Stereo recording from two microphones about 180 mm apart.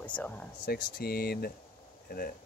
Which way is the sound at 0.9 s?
60° left (ahead or behind).